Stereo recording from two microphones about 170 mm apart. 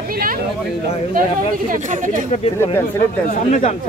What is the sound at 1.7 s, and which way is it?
Speech, 50° right (ahead or behind).